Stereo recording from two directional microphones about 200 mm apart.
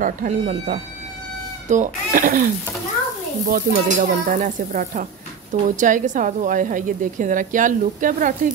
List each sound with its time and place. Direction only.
0.0 s a woman's voice: 40° right (ahead or behind)
3.4 s a woman's voice: 45° right (ahead or behind)